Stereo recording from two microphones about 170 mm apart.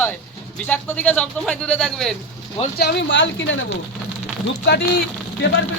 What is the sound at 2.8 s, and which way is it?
Speech, 85° left.